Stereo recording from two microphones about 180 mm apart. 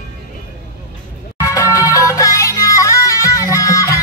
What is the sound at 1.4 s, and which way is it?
Music, 15° left (ahead or behind).